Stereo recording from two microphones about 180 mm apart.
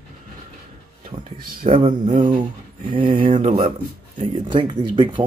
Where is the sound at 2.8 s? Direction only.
30° right (ahead or behind).